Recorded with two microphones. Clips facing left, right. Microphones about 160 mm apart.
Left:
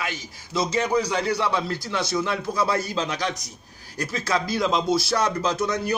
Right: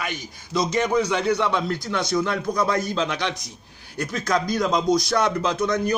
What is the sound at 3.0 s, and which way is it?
Speech, 40° left (ahead or behind).